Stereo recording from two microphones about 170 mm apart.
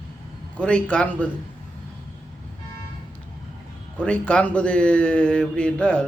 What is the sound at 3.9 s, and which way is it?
Speech, 5° left (ahead or behind).